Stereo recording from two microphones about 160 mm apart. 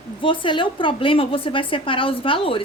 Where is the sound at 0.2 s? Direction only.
30° left (ahead or behind).